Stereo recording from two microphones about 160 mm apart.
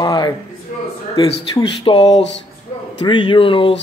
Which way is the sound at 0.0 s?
25° left (ahead or behind).